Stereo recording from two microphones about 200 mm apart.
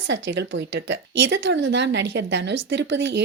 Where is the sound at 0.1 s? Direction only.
65° right (ahead or behind).